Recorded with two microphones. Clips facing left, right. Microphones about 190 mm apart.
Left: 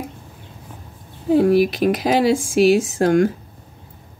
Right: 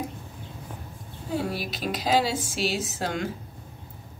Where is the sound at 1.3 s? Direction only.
55° left (ahead or behind).